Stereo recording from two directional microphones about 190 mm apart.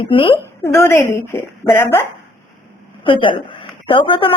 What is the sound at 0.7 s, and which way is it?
A woman's voice, 15° left (ahead or behind).